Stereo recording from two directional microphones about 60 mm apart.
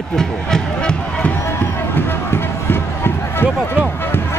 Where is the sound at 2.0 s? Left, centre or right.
Left.